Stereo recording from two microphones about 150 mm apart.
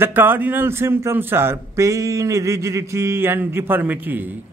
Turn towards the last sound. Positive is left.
turn(degrees=-15)  # may be behind; listen again after turning